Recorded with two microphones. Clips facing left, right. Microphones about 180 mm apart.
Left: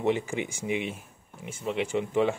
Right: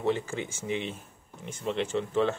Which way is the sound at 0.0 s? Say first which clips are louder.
Left 2 dB; 15° left (ahead or behind).